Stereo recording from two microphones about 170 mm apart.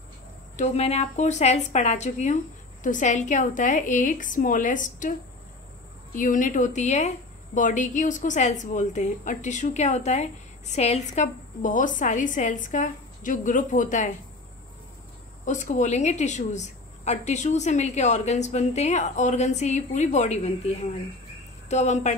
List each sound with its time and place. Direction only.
0.6 s a woman's voice: 40° left (ahead or behind)
6.1 s a woman's voice: 50° left (ahead or behind)
15.4 s a woman's voice: 45° left (ahead or behind)